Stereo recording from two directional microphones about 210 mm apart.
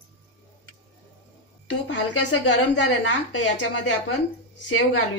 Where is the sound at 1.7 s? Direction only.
60° left (ahead or behind).